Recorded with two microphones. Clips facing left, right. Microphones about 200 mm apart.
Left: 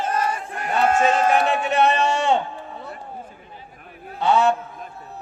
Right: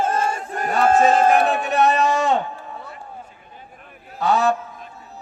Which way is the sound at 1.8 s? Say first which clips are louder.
Right 2 dB; 30° left (ahead or behind).